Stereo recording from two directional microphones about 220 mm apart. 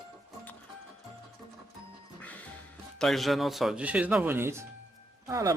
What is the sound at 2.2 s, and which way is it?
Music, 5° left (ahead or behind).